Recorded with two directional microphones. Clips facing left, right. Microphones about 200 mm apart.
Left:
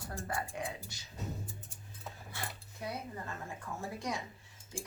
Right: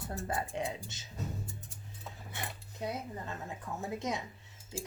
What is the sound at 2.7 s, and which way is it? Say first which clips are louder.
Speech: right 3 dB; 20° right (ahead or behind).